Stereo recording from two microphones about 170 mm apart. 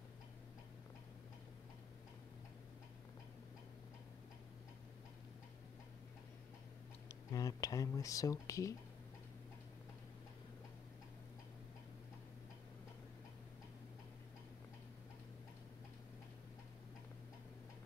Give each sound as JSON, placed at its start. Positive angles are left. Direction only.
{"t": 7.1, "sound": "speech", "side_deg": 20}